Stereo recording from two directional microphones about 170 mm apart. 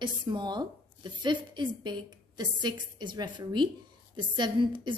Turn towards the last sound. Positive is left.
turn(degrees=-25)  # may be behind; listen again after turning